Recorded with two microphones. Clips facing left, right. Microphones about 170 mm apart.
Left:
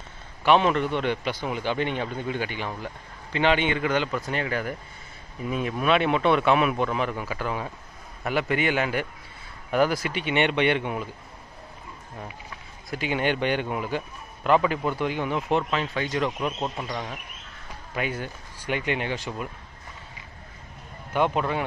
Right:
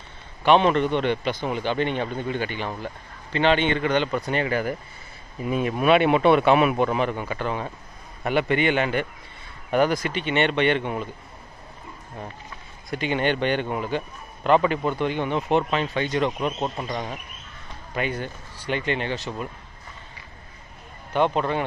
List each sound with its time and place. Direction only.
0.4 s a man's voice: 5° left (ahead or behind)
12.9 s a man's voice: 5° left (ahead or behind)
16.3 s speech: 15° right (ahead or behind)
16.7 s speech: 5° right (ahead or behind)
17.9 s a man's voice: 5° left (ahead or behind)
21.1 s speech: 5° left (ahead or behind)